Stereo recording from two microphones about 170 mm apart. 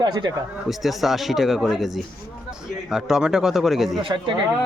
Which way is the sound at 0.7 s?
Centre (ahead or behind).